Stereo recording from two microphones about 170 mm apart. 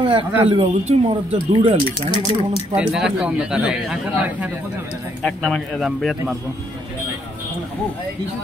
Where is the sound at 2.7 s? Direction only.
5° right (ahead or behind).